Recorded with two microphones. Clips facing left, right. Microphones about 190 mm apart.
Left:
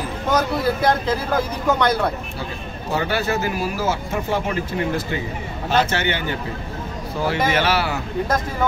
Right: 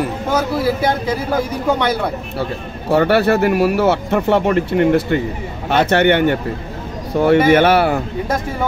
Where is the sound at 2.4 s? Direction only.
65° right (ahead or behind).